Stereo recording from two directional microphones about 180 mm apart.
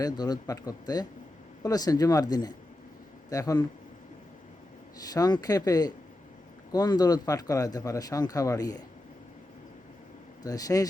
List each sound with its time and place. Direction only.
0.0 s a man's voice: 20° left (ahead or behind)
4.9 s a man's voice: 20° left (ahead or behind)
10.4 s a man's voice: 20° left (ahead or behind)